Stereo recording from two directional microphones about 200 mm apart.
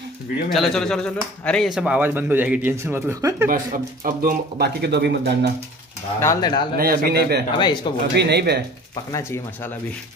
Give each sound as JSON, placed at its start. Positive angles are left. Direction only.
{"t": 0.5, "sound": "speech", "side_deg": 0}
{"t": 3.4, "sound": "speech", "side_deg": -45}
{"t": 6.2, "sound": "speech", "side_deg": 20}
{"t": 6.8, "sound": "speech", "side_deg": -50}
{"t": 7.5, "sound": "speech", "side_deg": 25}
{"t": 8.2, "sound": "speech", "side_deg": -55}